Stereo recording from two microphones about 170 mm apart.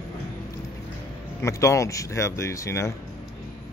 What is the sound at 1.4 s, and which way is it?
Speech, 15° left (ahead or behind).